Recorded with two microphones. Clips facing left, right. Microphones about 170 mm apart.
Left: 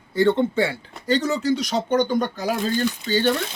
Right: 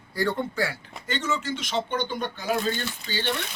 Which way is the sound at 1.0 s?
35° left (ahead or behind).